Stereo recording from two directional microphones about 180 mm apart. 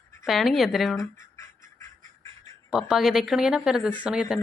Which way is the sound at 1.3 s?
15° left (ahead or behind).